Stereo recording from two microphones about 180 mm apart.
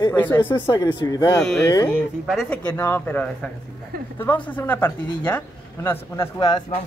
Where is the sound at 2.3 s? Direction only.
Centre (ahead or behind).